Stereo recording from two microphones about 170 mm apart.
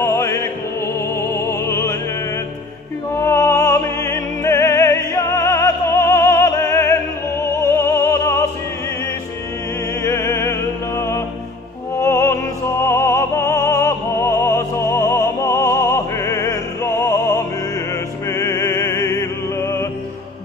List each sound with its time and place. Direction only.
0.0 s music: 15° left (ahead or behind)
3.2 s opera: 15° left (ahead or behind)
10.0 s music: 15° left (ahead or behind)
12.8 s opera: 15° left (ahead or behind)
18.3 s music: 15° left (ahead or behind)